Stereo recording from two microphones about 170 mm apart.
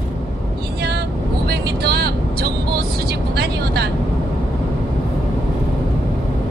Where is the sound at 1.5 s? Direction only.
70° right (ahead or behind).